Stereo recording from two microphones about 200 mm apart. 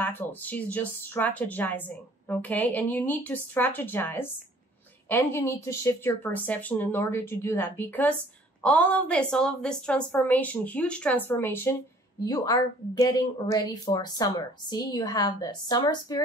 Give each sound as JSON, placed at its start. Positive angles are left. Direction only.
{"t": 0.0, "sound": "a woman's voice", "side_deg": 10}